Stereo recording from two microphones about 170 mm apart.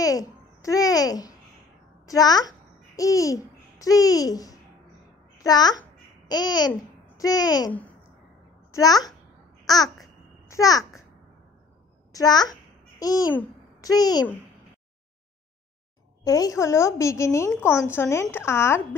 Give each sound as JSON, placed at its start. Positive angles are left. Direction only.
{"t": 0.0, "sound": "a child's voice", "side_deg": 20}
{"t": 8.7, "sound": "a child's voice", "side_deg": 20}
{"t": 10.5, "sound": "a child's voice", "side_deg": 20}
{"t": 12.1, "sound": "a child's voice", "side_deg": 20}
{"t": 13.3, "sound": "a sound", "side_deg": 10}
{"t": 13.8, "sound": "a child's voice", "side_deg": 25}
{"t": 16.3, "sound": "a woman's voice", "side_deg": 20}